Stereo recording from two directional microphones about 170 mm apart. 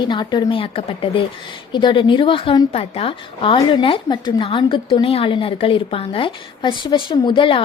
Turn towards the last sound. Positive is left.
turn(degrees=30)  # may be behind; listen again after turning